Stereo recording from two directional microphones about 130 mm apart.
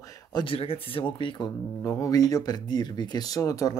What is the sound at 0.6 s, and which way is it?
Speech, 45° left (ahead or behind).